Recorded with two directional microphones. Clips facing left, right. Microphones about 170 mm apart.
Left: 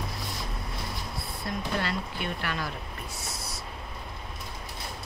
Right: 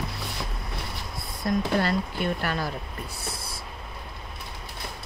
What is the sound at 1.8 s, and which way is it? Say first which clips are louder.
Speech: right 6 dB; 40° right (ahead or behind).